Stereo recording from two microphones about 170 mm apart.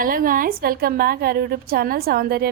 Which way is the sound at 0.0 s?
55° right (ahead or behind).